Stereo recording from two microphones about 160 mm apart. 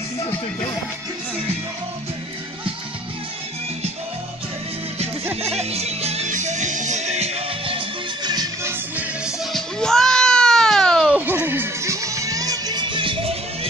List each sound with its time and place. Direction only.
5.3 s music: 40° right (ahead or behind); by 8.7 s 25° right (ahead or behind)
8.9 s music: 5° right (ahead or behind); by 13.4 s 35° right (ahead or behind)